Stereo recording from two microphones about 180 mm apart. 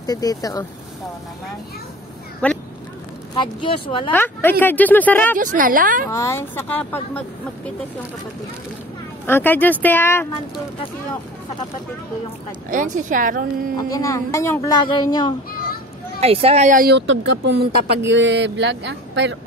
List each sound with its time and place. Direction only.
0.0 s speech: 20° left (ahead or behind)
2.4 s speech: 5° left (ahead or behind)
3.3 s speech: 25° left (ahead or behind)
4.1 s speech: 10° left (ahead or behind)
5.4 s speech: 50° right (ahead or behind)
6.0 s speech: 15° left (ahead or behind)
9.2 s speech: 10° left (ahead or behind)
12.6 s speech: 45° right (ahead or behind)
13.7 s speech: 20° left (ahead or behind)
16.2 s speech: 35° right (ahead or behind)
16.9 s speech: 90° right